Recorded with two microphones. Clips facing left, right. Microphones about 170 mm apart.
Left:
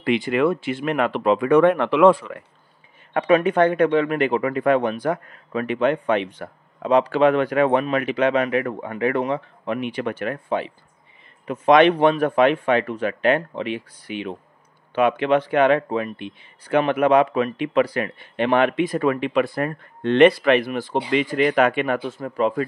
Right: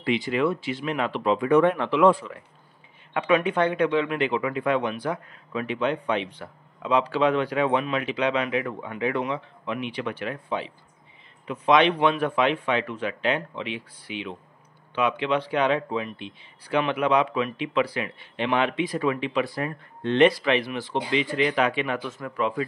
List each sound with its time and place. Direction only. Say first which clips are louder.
0.0 s speech: left 4 dB; 60° left (ahead or behind)
3.2 s speech: left 5 dB; 40° left (ahead or behind)
22.0 s speech: left 5 dB; 35° left (ahead or behind)